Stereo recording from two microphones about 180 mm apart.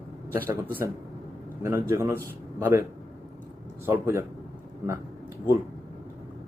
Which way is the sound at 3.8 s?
15° right (ahead or behind).